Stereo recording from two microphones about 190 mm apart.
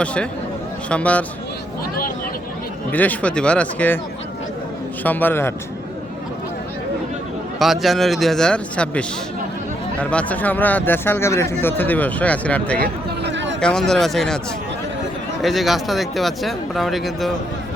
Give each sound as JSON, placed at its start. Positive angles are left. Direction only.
{"t": 0.0, "sound": "speech", "side_deg": 5}
{"t": 2.9, "sound": "speech", "side_deg": 10}
{"t": 5.0, "sound": "speech", "side_deg": 10}
{"t": 7.6, "sound": "speech", "side_deg": 0}
{"t": 12.8, "sound": "a sound", "side_deg": -65}
{"t": 13.6, "sound": "speech", "side_deg": 5}
{"t": 15.4, "sound": "speech", "side_deg": 0}